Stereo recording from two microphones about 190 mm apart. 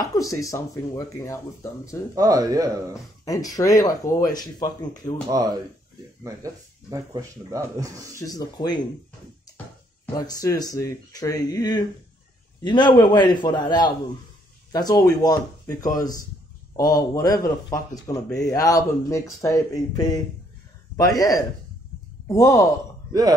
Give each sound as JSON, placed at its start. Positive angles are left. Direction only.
{"t": 0.0, "sound": "speech", "side_deg": 20}
{"t": 2.1, "sound": "speech", "side_deg": -20}
{"t": 2.9, "sound": "speech", "side_deg": 20}
{"t": 5.3, "sound": "speech", "side_deg": -20}
{"t": 8.2, "sound": "speech", "side_deg": 20}
{"t": 10.1, "sound": "speech", "side_deg": 20}
{"t": 16.9, "sound": "speech", "side_deg": 20}